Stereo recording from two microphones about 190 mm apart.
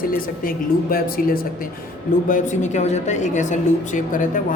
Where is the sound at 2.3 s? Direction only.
40° left (ahead or behind).